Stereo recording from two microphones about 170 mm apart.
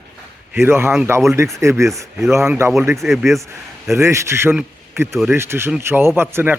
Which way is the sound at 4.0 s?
15° right (ahead or behind).